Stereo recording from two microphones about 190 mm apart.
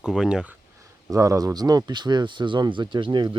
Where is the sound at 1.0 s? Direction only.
15° right (ahead or behind).